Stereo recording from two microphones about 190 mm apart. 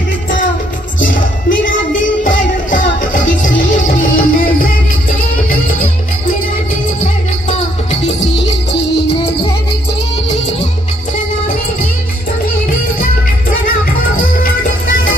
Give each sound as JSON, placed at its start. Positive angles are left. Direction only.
{"t": 1.0, "sound": "music", "side_deg": 45}
{"t": 14.1, "sound": "music", "side_deg": 45}